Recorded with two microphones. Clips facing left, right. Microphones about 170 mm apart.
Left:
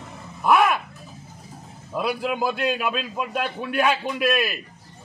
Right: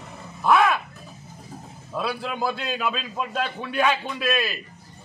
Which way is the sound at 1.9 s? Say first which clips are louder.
Left 3 dB; 15° left (ahead or behind).